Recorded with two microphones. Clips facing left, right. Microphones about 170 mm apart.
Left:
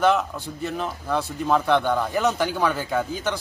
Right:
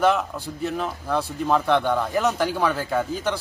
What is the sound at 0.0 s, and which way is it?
A man's voice, centre (ahead or behind).